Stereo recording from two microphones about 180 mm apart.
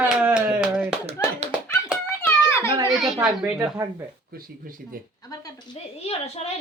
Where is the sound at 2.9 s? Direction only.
Centre (ahead or behind).